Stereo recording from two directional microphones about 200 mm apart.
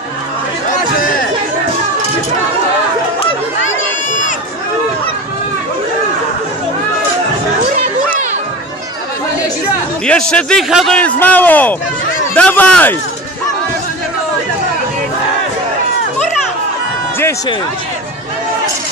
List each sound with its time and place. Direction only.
7.7 s music: 40° right (ahead or behind)
10.0 s a man's voice: 5° left (ahead or behind)